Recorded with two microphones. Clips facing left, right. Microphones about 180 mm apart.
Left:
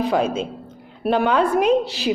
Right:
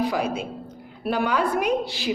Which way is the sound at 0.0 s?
25° left (ahead or behind).